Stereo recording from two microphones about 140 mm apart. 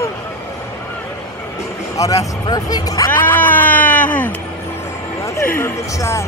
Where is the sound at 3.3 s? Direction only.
10° left (ahead or behind).